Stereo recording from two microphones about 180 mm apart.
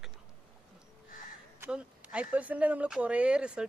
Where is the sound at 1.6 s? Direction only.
5° right (ahead or behind).